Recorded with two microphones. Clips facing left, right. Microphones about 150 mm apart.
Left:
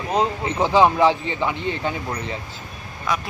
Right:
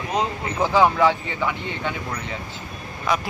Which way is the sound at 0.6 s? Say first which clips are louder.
Left 2 dB; 20° left (ahead or behind).